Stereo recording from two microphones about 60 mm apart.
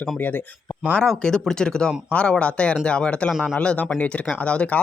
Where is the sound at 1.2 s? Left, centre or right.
Centre.